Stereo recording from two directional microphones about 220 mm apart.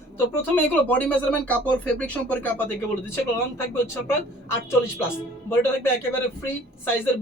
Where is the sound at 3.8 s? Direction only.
10° left (ahead or behind).